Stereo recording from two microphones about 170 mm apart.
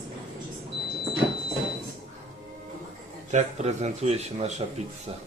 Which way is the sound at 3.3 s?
40° right (ahead or behind).